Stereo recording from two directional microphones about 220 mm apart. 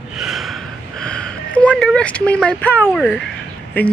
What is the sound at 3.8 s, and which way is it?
Speech, 10° left (ahead or behind).